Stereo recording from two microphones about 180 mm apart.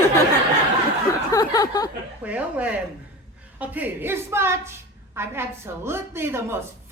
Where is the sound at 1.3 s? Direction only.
20° left (ahead or behind).